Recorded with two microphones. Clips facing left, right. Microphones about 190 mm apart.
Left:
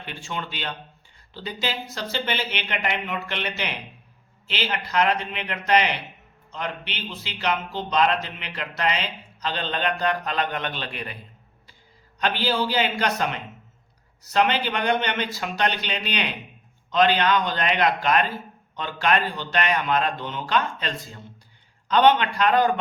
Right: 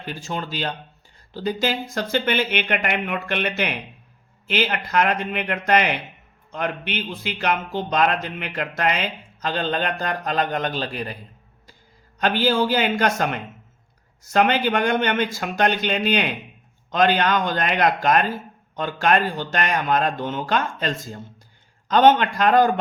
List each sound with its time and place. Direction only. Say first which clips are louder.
0.0 s speech: right 4 dB; 40° right (ahead or behind)
12.2 s speech: right 4 dB; 45° right (ahead or behind)